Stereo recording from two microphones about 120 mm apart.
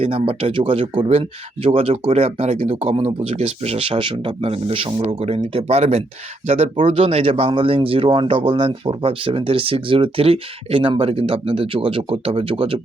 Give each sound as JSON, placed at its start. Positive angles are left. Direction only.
{"t": 0.0, "sound": "speech", "side_deg": -50}